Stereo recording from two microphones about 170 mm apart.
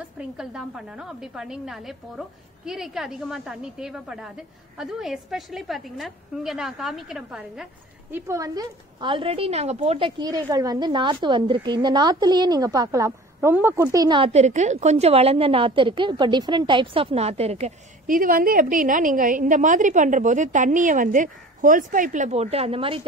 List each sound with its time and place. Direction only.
0.2 s a woman's voice: 5° right (ahead or behind)
8.1 s a woman's voice: 20° right (ahead or behind); by 23.0 s 35° right (ahead or behind)